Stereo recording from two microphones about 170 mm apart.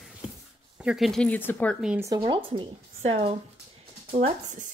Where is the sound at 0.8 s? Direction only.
Centre (ahead or behind).